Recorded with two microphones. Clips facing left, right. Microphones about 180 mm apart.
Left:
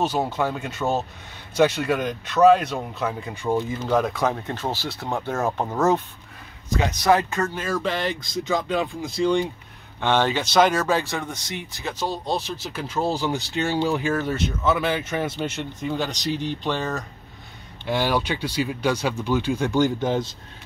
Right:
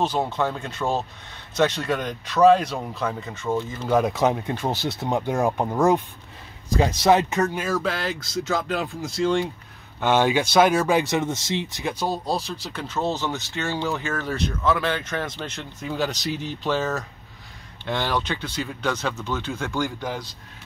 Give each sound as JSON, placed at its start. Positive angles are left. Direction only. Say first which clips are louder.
{"t": 0.0, "sound": "speech", "louder": "even", "side_deg": 5}
{"t": 3.8, "sound": "speech", "louder": "right 4 dB", "side_deg": -10}
{"t": 6.7, "sound": "speech", "louder": "right 2 dB", "side_deg": -30}
{"t": 7.6, "sound": "speech", "louder": "even", "side_deg": -5}
{"t": 11.9, "sound": "speech", "louder": "even", "side_deg": -10}
{"t": 17.8, "sound": "speech", "louder": "left 3 dB", "side_deg": 10}